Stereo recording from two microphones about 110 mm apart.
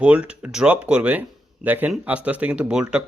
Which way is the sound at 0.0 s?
10° right (ahead or behind).